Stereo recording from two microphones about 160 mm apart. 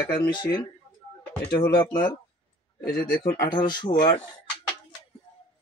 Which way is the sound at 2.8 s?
60° left (ahead or behind).